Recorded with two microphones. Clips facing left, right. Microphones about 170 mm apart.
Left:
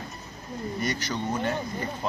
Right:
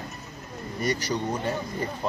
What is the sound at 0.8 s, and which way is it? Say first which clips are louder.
Speech: right 5 dB; 35° right (ahead or behind).